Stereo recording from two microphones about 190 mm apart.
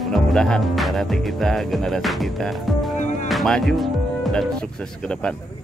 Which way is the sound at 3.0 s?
40° left (ahead or behind).